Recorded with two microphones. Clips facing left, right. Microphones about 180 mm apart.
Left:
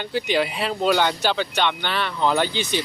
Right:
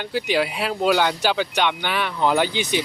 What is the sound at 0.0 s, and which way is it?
Speech, 5° right (ahead or behind).